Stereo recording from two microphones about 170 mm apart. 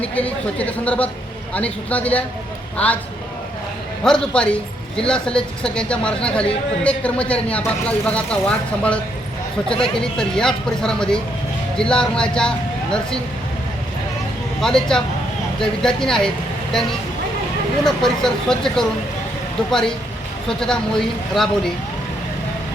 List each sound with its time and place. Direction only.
0.0 s speech: 10° left (ahead or behind)
4.0 s speech: 5° left (ahead or behind)
14.6 s speech: 5° left (ahead or behind)
20.5 s speech: 5° left (ahead or behind)